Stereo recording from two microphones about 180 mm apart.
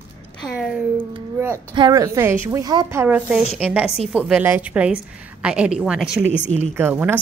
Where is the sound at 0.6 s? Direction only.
Centre (ahead or behind).